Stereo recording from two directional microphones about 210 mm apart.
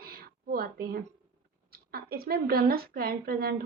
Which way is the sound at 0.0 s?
45° right (ahead or behind).